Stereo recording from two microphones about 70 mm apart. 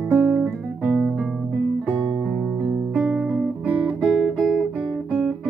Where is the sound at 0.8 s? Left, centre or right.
Centre.